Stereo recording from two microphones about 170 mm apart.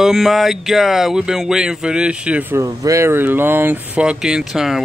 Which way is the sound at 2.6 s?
20° right (ahead or behind).